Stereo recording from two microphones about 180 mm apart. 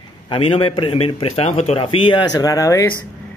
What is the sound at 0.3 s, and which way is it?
A man's voice, 30° left (ahead or behind).